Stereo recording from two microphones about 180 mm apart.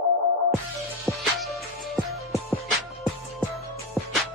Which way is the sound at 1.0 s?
Centre (ahead or behind).